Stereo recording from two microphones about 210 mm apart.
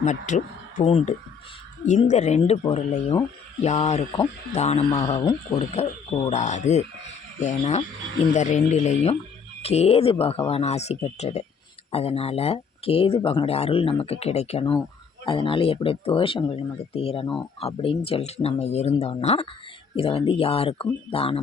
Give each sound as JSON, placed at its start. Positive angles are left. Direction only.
{"t": 0.0, "sound": "speech", "side_deg": 35}